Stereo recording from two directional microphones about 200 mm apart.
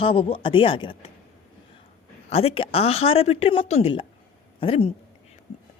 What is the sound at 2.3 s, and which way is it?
A woman's voice, 30° left (ahead or behind).